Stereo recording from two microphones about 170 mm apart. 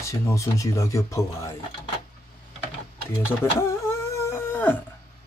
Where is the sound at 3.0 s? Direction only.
15° left (ahead or behind).